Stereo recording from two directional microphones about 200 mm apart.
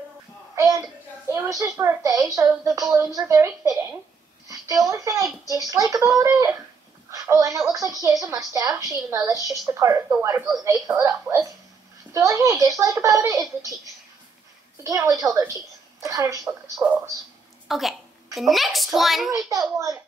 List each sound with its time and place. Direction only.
0.6 s a sound: 15° right (ahead or behind)
1.3 s a woman's voice: 15° right (ahead or behind)
5.4 s speech: 15° left (ahead or behind)
5.7 s a woman's voice: 15° right (ahead or behind)
14.8 s a woman's voice: 15° right (ahead or behind); by 19.3 s centre (ahead or behind)